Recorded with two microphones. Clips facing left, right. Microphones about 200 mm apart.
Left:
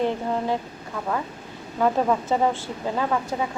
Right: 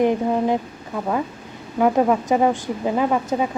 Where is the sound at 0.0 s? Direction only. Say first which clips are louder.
Right 6 dB; 15° right (ahead or behind).